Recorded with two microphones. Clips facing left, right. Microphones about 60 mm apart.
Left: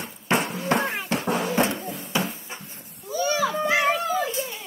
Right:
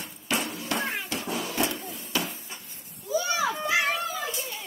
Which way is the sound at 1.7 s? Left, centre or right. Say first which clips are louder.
Left 5 dB; left.